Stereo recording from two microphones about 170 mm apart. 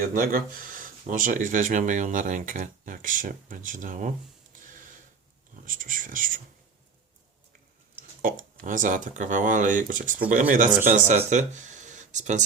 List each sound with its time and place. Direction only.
0.1 s speech: 55° right (ahead or behind)
4.5 s a sound: 50° right (ahead or behind)
5.6 s speech: 50° right (ahead or behind)
8.2 s speech: 55° right (ahead or behind)